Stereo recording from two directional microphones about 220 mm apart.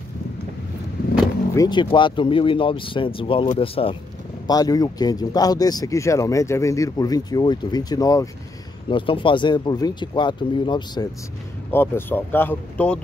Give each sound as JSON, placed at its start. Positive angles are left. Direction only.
{"t": 1.5, "sound": "speech", "side_deg": 15}
{"t": 11.7, "sound": "speech", "side_deg": 10}